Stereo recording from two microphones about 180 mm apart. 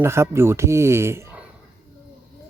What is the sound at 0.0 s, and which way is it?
Speech, 15° right (ahead or behind).